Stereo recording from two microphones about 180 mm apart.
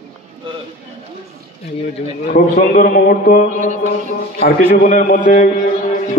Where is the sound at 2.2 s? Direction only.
45° left (ahead or behind).